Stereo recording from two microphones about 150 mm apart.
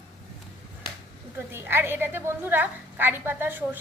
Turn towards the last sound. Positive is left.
turn(degrees=-15)  # may be behind; listen again after turning